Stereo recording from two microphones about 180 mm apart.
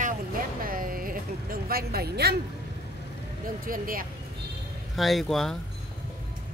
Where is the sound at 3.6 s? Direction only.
50° right (ahead or behind).